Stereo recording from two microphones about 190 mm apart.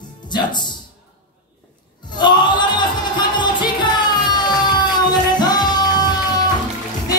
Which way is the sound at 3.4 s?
25° left (ahead or behind).